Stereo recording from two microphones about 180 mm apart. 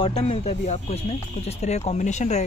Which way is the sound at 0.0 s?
35° left (ahead or behind).